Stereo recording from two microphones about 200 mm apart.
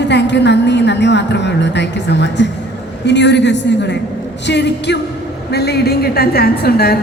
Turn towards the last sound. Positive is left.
turn(degrees=50)  # may be behind; listen again after turning